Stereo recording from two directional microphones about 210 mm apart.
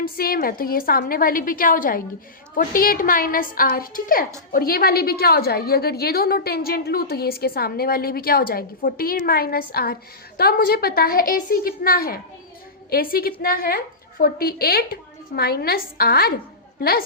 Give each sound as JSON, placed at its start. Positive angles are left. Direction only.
{"t": 0.2, "sound": "a woman's voice", "side_deg": 45}